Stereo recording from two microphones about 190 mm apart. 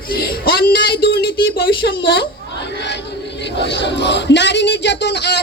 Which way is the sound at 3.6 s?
65° left (ahead or behind).